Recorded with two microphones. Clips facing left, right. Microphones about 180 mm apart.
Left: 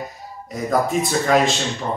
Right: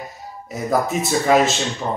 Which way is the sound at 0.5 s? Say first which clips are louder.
Even; 5° right (ahead or behind).